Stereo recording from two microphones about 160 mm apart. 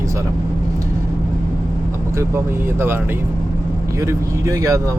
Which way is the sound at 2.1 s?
15° right (ahead or behind).